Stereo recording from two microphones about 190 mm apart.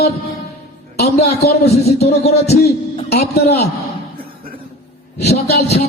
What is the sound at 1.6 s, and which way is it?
Speech, 35° left (ahead or behind).